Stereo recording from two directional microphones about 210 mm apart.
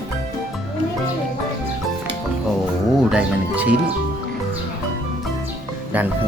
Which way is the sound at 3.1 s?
5° right (ahead or behind).